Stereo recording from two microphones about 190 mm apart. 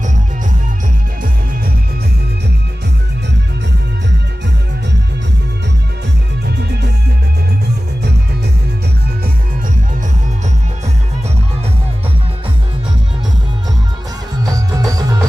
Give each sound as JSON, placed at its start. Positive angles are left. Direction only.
{"t": 6.4, "sound": "music", "side_deg": -60}
{"t": 14.4, "sound": "music", "side_deg": -20}